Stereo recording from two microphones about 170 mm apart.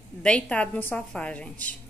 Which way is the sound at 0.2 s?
5° left (ahead or behind).